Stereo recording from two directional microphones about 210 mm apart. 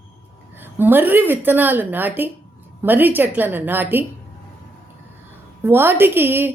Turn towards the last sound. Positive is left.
turn(degrees=-10)  # may be behind; listen again after turning